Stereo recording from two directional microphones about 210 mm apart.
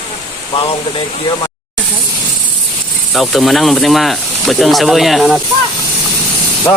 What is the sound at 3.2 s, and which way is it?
Speech, centre (ahead or behind).